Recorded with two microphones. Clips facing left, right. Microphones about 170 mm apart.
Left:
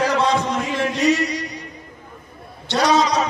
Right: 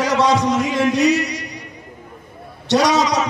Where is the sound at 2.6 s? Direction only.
80° right.